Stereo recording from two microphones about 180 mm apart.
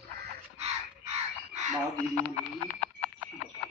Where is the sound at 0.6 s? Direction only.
35° right (ahead or behind).